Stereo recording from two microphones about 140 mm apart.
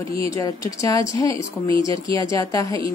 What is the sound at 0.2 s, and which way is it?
Speech, 25° left (ahead or behind).